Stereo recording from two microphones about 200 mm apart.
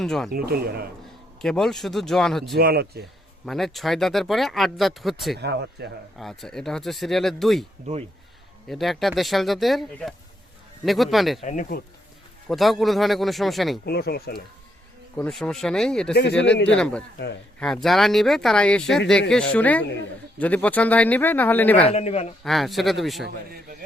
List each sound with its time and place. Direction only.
0.0 s speech: centre (ahead or behind)
0.3 s speech: 50° right (ahead or behind)
1.4 s speech: centre (ahead or behind)
2.6 s speech: 50° right (ahead or behind)
3.4 s speech: centre (ahead or behind)
5.4 s speech: 55° right (ahead or behind)
6.1 s speech: centre (ahead or behind)
11.4 s a man's voice: 40° left (ahead or behind)
12.5 s speech: centre (ahead or behind)
13.8 s speech: 55° left (ahead or behind)
15.1 s speech: 5° left (ahead or behind)
21.8 s a man's voice: 30° left (ahead or behind)
22.4 s speech: centre (ahead or behind)
23.2 s speech: 50° right (ahead or behind)